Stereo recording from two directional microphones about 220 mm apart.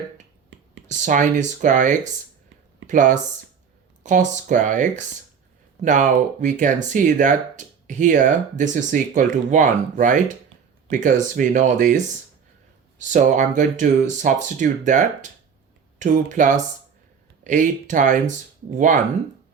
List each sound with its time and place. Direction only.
0.9 s speech: 35° right (ahead or behind)
13.0 s speech: 35° right (ahead or behind)